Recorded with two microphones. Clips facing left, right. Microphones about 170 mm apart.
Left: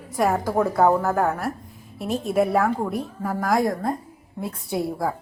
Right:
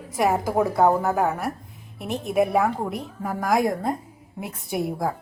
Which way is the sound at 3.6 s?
25° right (ahead or behind).